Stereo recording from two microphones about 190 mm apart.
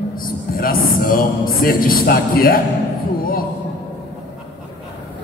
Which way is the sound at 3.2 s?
50° left (ahead or behind).